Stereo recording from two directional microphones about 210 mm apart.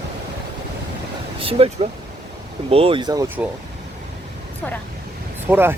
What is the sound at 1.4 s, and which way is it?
Speech, 25° right (ahead or behind).